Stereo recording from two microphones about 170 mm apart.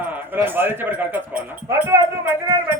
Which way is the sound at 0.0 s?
10° right (ahead or behind).